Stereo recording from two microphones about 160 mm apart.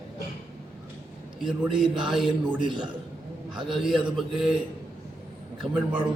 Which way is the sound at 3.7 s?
Centre (ahead or behind).